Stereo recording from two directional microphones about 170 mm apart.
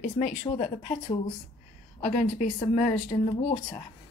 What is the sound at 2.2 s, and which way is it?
Speech, 45° left (ahead or behind).